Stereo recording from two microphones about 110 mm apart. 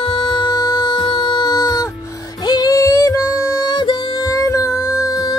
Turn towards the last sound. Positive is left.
turn(degrees=35)  # may be behind; listen again after turning